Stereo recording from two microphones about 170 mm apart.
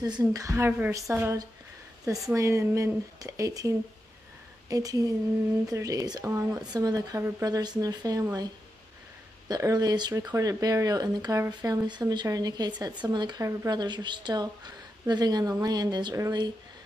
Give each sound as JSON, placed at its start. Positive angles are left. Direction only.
{"t": 0.0, "sound": "speech", "side_deg": -20}
{"t": 9.5, "sound": "speech", "side_deg": -20}